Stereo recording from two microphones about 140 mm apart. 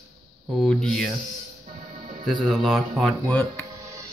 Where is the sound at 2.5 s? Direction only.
Centre (ahead or behind).